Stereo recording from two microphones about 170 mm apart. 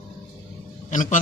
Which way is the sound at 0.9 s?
50° left (ahead or behind).